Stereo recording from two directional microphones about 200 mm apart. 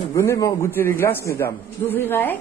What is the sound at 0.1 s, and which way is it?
A woman's voice, 15° left (ahead or behind).